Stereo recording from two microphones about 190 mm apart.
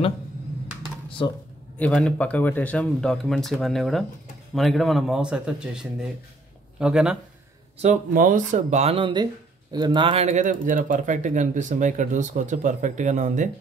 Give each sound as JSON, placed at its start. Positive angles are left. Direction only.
{"t": 1.8, "sound": "speech", "side_deg": 5}
{"t": 7.8, "sound": "speech", "side_deg": -40}